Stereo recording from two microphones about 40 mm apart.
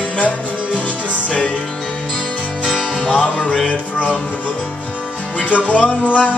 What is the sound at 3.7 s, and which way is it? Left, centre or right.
Music, left.